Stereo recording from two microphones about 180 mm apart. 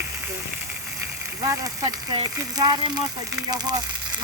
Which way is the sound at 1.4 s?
20° right (ahead or behind).